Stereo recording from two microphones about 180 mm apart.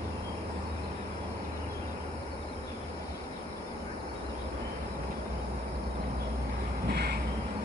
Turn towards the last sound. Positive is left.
turn(degrees=-60)  # may be behind; listen again after turning